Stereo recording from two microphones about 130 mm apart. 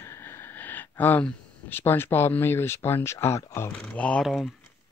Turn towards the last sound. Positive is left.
turn(degrees=0)  # may be behind; listen again after turning